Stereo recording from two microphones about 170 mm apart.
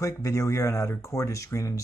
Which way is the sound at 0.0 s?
20° left (ahead or behind).